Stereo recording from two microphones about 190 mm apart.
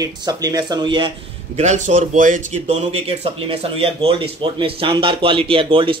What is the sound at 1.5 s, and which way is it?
Speech, 40° right (ahead or behind).